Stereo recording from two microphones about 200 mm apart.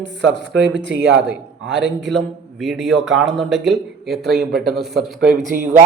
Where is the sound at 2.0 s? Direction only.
Centre (ahead or behind).